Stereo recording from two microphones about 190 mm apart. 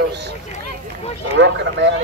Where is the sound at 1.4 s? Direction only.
65° right (ahead or behind).